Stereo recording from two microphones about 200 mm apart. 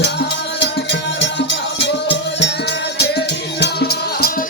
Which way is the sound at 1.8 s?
60° left (ahead or behind).